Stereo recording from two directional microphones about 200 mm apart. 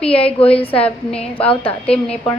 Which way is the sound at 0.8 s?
5° left (ahead or behind).